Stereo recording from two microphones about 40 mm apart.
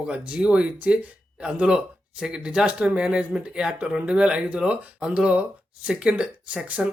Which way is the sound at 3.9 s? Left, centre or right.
Right.